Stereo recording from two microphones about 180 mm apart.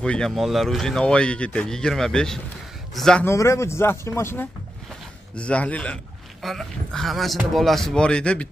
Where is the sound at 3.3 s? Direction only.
15° left (ahead or behind).